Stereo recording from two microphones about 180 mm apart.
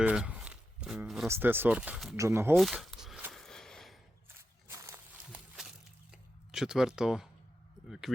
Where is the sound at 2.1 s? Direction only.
15° right (ahead or behind).